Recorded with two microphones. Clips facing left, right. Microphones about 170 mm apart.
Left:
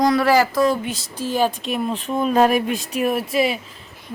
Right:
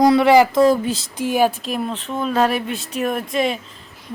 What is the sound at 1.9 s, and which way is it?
Speech, 10° left (ahead or behind).